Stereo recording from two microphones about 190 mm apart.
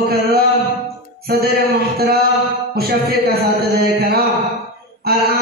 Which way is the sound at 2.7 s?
55° right (ahead or behind).